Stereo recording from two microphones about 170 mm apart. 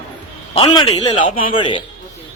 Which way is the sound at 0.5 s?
30° left (ahead or behind).